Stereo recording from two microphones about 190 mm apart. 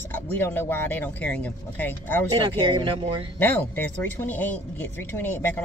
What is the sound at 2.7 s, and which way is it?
Speech, 25° right (ahead or behind).